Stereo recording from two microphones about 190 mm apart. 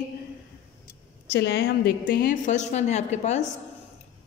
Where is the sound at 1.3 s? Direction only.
60° left (ahead or behind).